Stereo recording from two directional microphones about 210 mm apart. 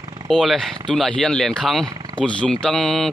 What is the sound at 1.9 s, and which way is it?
Wild animals, 20° right (ahead or behind).